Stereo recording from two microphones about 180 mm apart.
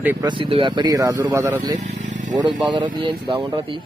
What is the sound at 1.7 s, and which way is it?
Vehicle, 40° right (ahead or behind).